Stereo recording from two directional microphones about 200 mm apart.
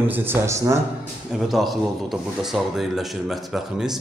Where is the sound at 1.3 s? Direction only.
Centre (ahead or behind).